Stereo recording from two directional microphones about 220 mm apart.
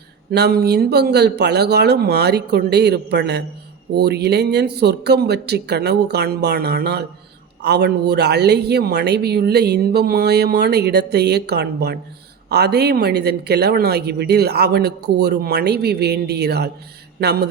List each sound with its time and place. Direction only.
0.3 s speech: 45° right (ahead or behind)